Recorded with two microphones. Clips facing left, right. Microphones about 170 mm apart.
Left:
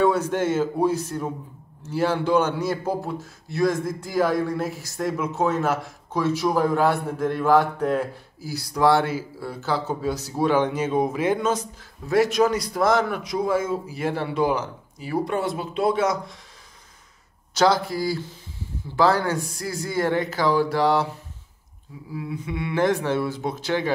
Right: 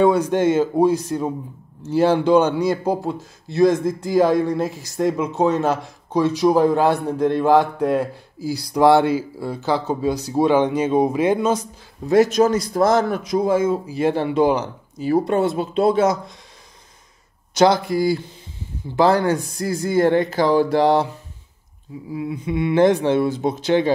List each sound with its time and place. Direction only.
0.0 s a man's voice: 15° right (ahead or behind)
12.3 s a man's voice: 45° right (ahead or behind)
13.5 s speech: 20° right (ahead or behind)
17.6 s speech: 20° right (ahead or behind)
19.6 s a man's voice: 50° right (ahead or behind)
20.0 s speech: 25° right (ahead or behind)
22.1 s speech: 20° right (ahead or behind)